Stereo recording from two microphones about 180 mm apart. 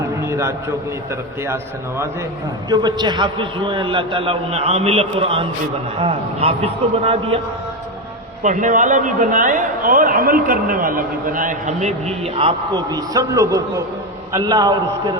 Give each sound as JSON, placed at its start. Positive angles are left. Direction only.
{"t": 0.2, "sound": "a sound", "side_deg": -15}
{"t": 2.6, "sound": "a man's voice", "side_deg": -25}
{"t": 8.4, "sound": "a man's voice", "side_deg": -45}